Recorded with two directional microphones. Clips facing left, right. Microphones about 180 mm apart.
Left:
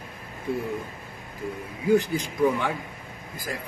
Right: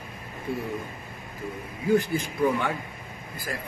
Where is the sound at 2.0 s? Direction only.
15° left (ahead or behind).